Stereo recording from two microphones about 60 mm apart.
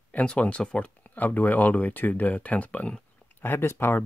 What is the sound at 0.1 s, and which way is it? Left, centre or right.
Speech, left.